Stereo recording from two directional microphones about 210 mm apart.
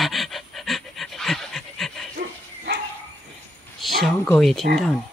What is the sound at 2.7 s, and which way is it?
Dog, 55° right (ahead or behind).